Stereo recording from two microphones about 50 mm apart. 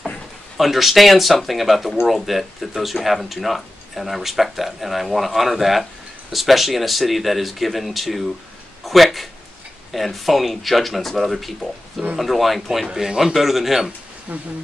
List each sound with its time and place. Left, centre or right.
0.6 s speech: centre
14.3 s speech: right